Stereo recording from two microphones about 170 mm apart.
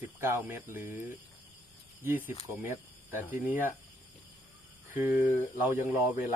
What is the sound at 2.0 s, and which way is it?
Speech, 10° right (ahead or behind).